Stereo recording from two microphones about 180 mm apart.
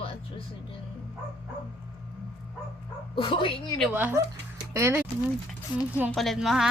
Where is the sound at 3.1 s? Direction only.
30° left (ahead or behind).